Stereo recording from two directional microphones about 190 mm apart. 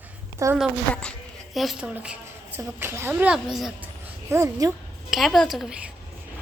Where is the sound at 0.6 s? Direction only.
5° left (ahead or behind).